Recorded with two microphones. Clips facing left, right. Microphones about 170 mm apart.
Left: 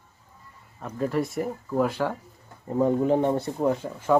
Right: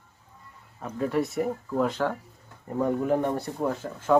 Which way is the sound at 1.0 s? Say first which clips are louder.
Even; centre (ahead or behind).